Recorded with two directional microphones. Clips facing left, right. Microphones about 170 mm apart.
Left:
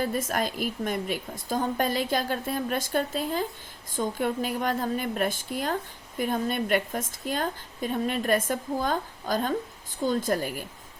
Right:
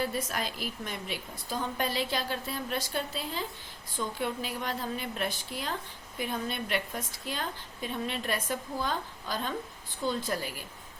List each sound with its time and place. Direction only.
0.0 s a woman's voice: 45° left (ahead or behind)